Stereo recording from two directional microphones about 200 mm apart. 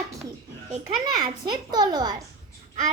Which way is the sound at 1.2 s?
20° right (ahead or behind).